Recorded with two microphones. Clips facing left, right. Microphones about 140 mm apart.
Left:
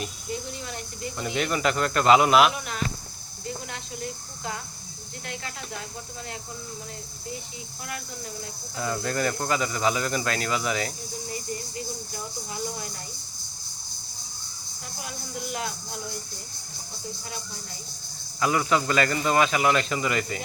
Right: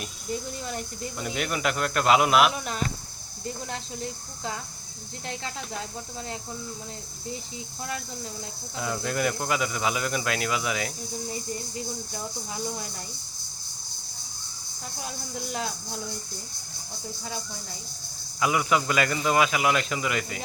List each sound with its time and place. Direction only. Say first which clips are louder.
1.2 s speech: left 3 dB; 5° right (ahead or behind)
3.7 s speech: right 1 dB; 25° right (ahead or behind)
8.8 s speech: left 1 dB; 5° right (ahead or behind)
18.3 s speech: left 1 dB; 10° right (ahead or behind)